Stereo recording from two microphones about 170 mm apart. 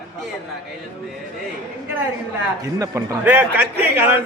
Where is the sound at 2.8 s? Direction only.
15° right (ahead or behind).